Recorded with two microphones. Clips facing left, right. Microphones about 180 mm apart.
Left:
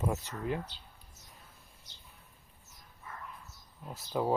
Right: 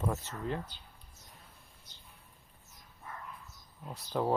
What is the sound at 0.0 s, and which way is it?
Speech, 10° left (ahead or behind).